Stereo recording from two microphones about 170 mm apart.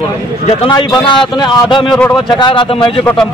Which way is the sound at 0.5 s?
25° left (ahead or behind).